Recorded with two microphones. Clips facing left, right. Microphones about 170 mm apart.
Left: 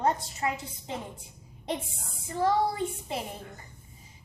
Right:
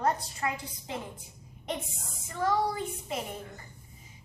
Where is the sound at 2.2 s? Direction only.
30° left (ahead or behind).